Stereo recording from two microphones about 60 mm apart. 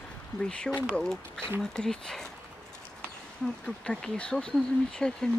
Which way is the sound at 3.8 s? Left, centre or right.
Centre.